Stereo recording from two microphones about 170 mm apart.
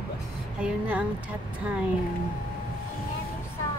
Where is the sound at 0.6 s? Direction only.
5° right (ahead or behind).